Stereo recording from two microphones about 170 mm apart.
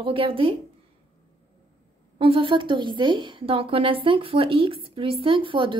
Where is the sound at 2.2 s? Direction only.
30° right (ahead or behind).